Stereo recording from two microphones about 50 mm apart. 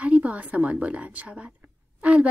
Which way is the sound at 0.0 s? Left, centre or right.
Right.